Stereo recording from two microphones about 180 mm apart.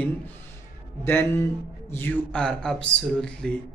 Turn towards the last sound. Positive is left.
turn(degrees=5)  # may be behind; listen again after turning